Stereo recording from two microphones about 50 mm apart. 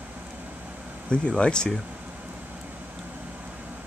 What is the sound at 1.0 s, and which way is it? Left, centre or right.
Speech, left.